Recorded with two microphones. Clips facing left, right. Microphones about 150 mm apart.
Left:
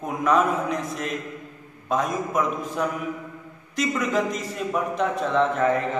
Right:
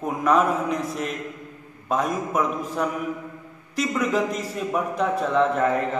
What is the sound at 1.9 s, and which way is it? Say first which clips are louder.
A man's voice: right 1 dB; 5° right (ahead or behind).